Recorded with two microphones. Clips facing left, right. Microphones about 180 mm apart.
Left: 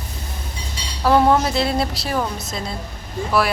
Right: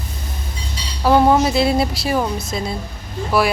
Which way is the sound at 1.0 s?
5° right (ahead or behind).